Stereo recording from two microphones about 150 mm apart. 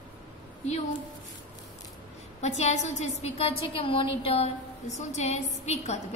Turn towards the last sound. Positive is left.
turn(degrees=50)  # may be behind; listen again after turning